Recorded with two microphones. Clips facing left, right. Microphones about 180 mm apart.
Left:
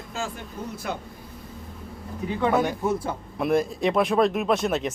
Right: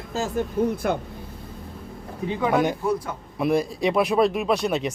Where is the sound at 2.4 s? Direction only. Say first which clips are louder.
Right 1 dB; 10° right (ahead or behind).